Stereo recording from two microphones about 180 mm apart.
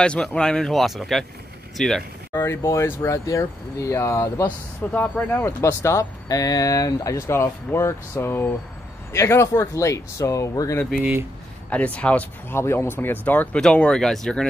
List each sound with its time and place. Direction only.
0.0 s speech: 5° left (ahead or behind)
2.4 s speech: 15° left (ahead or behind)
10.9 s speech: 10° right (ahead or behind)
11.7 s speech: 5° left (ahead or behind)